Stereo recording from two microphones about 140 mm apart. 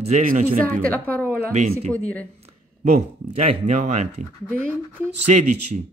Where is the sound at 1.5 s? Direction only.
55° right (ahead or behind).